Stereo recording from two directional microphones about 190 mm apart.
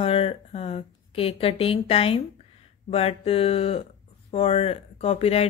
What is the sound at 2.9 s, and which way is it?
A woman's voice, 30° left (ahead or behind).